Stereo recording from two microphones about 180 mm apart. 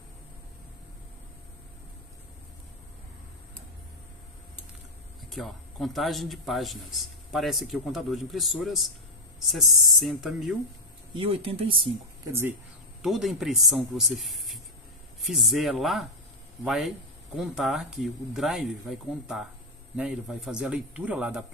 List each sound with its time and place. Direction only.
5.3 s speech: centre (ahead or behind)
11.1 s speech: 30° right (ahead or behind)
12.3 s speech: 15° right (ahead or behind)
13.0 s speech: centre (ahead or behind)